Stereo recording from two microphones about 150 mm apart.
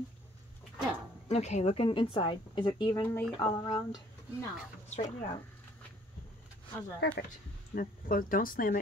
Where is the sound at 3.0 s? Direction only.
15° left (ahead or behind).